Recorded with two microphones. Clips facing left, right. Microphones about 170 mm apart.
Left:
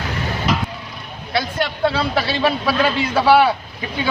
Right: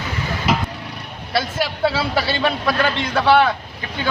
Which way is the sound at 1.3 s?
5° right (ahead or behind).